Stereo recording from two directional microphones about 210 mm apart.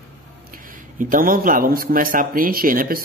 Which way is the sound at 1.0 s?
40° right (ahead or behind).